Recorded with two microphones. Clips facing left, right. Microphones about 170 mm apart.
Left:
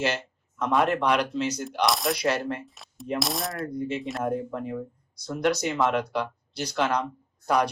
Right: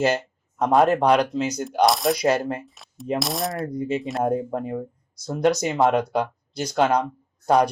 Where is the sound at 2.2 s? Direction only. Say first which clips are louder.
Right 5 dB; 45° right (ahead or behind).